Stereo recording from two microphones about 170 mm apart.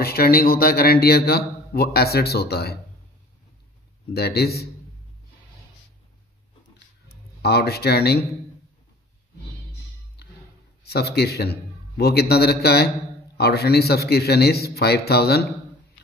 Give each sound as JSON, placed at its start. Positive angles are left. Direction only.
{"t": 0.0, "sound": "a man's voice", "side_deg": 65}
{"t": 4.1, "sound": "a man's voice", "side_deg": 70}
{"t": 7.4, "sound": "a man's voice", "side_deg": 70}
{"t": 10.9, "sound": "a man's voice", "side_deg": 70}